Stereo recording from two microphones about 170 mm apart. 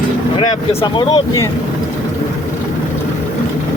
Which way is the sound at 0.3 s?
30° left (ahead or behind).